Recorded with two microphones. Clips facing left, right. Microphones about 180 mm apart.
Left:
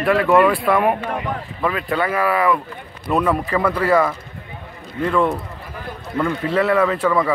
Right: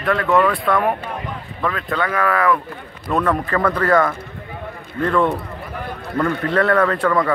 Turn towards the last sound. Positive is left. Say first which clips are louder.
# even
turn(degrees=5)  # may be behind; listen again after turning